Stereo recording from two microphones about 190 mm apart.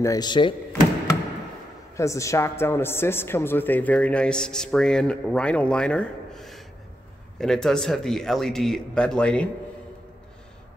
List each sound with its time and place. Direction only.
0.0 s speech: 20° left (ahead or behind)
2.0 s a woman's voice: 15° left (ahead or behind)